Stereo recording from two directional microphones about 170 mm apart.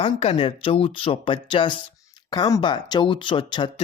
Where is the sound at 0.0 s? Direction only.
35° left (ahead or behind).